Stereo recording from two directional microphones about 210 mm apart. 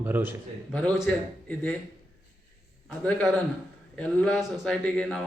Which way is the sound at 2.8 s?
5° left (ahead or behind).